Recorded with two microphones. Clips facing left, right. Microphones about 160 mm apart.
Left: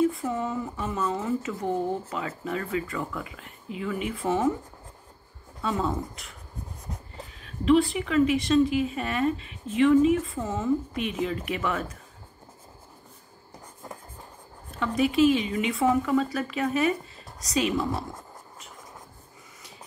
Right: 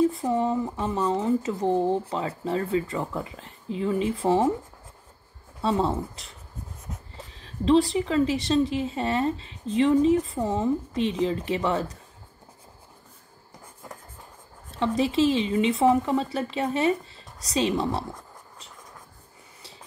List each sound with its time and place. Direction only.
0.0 s speech: 35° right (ahead or behind)
5.6 s speech: 30° right (ahead or behind)
7.3 s a woman's voice: 30° right (ahead or behind)
15.0 s a woman's voice: 30° right (ahead or behind)